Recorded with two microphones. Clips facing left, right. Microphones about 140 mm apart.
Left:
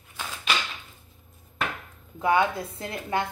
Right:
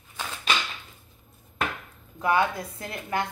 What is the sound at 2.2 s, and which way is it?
Speech, 20° left (ahead or behind).